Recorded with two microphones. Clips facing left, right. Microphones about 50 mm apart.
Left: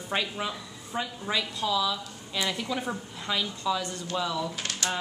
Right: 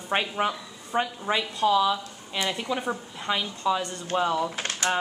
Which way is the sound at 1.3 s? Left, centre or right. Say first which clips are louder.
Right 5 dB; right.